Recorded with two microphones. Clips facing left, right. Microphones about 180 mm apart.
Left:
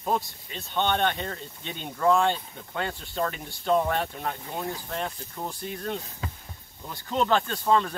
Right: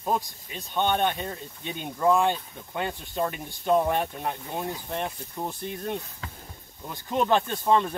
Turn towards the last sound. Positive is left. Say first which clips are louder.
# right 1 dB
turn(degrees=-20)  # may be behind; listen again after turning